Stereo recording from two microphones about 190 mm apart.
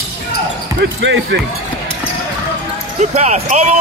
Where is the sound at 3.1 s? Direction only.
35° right (ahead or behind).